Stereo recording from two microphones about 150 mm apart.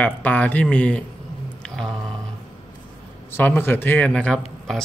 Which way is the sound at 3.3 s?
15° left (ahead or behind).